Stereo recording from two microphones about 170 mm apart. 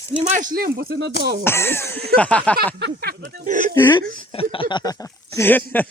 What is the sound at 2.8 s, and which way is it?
Speech, 70° right (ahead or behind).